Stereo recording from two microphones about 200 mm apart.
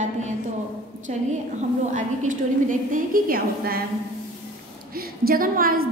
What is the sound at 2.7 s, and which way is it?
A woman's voice, 45° right (ahead or behind).